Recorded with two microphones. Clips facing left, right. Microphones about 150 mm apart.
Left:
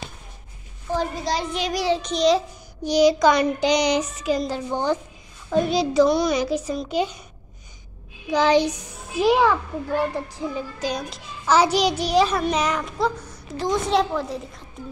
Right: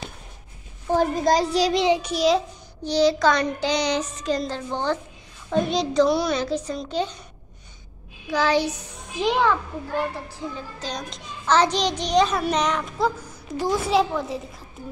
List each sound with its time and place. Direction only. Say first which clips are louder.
0.9 s a child's voice: right 5 dB; 45° right (ahead or behind)
2.0 s a child's voice: left 1 dB; 5° right (ahead or behind)
2.8 s a child's voice: left 3 dB; 15° left (ahead or behind)
6.3 s a child's voice: left 2 dB; 10° left (ahead or behind)
8.3 s a child's voice: left 3 dB; 20° left (ahead or behind); by 14.4 s centre (ahead or behind)